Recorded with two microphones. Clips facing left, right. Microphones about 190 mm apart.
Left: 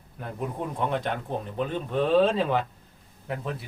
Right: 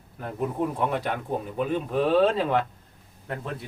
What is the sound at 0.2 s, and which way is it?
Speech, 5° right (ahead or behind).